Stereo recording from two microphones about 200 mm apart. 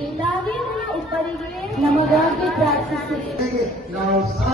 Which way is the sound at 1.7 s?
Centre (ahead or behind).